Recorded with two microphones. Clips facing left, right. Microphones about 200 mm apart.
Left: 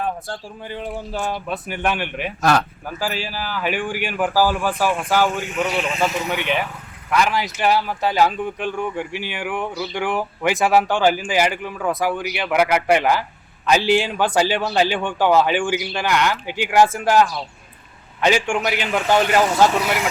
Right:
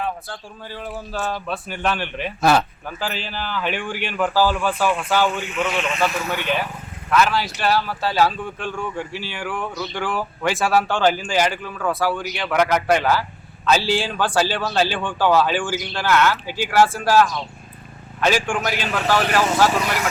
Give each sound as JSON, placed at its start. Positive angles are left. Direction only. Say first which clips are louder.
{"t": 0.3, "sound": "a man's voice", "louder": "left 4 dB", "side_deg": 25}
{"t": 2.4, "sound": "speech", "louder": "right 1 dB", "side_deg": -5}
{"t": 2.8, "sound": "a man's voice", "louder": "left 2 dB", "side_deg": 10}
{"t": 5.3, "sound": "speech", "louder": "left 1 dB", "side_deg": 45}
{"t": 6.0, "sound": "a man's voice", "louder": "left 1 dB", "side_deg": 20}
{"t": 9.7, "sound": "a man's voice", "louder": "left 2 dB", "side_deg": 10}
{"t": 10.0, "sound": "a man's voice", "louder": "left 2 dB", "side_deg": 20}